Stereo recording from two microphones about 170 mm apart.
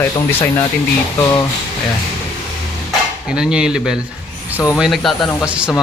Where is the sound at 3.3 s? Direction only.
5° right (ahead or behind).